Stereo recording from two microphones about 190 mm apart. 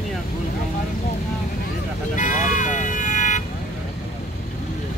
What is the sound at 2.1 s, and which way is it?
Vehicle, 40° left (ahead or behind).